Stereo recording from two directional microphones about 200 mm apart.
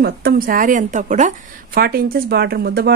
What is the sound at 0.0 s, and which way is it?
A woman's voice, 45° right (ahead or behind).